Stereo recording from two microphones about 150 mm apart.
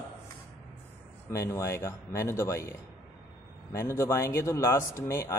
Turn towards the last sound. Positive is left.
turn(degrees=20)  # may be behind; listen again after turning